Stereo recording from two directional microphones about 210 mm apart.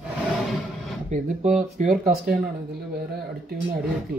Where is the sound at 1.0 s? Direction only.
35° right (ahead or behind).